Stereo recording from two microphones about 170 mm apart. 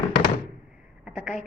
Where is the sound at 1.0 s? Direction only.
5° right (ahead or behind).